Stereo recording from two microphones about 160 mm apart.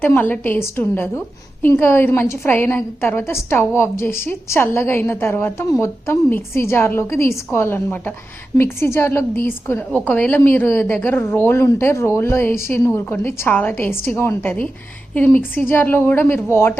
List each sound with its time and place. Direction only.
0.0 s a woman's voice: 10° left (ahead or behind)